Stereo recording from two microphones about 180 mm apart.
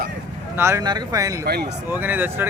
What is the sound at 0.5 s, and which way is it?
Speech, 15° right (ahead or behind).